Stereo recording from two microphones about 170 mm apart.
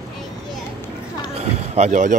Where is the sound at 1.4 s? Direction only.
40° right (ahead or behind).